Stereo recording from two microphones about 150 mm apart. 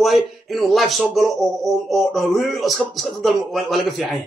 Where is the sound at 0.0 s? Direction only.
Centre (ahead or behind).